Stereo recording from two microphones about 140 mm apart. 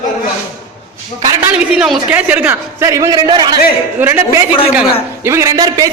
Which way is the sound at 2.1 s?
10° right (ahead or behind).